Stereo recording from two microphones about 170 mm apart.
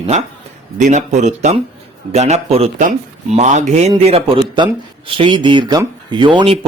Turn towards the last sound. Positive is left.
turn(degrees=-25)  # may be behind; listen again after turning